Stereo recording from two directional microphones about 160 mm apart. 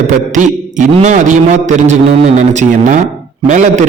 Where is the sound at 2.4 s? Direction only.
55° right (ahead or behind).